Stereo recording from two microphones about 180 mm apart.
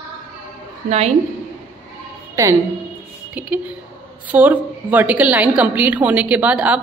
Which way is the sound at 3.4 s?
10° right (ahead or behind).